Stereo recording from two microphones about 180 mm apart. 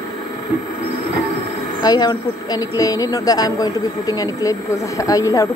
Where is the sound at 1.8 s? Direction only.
20° left (ahead or behind).